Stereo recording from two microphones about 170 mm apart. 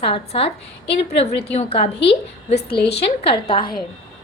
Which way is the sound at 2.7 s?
80° left.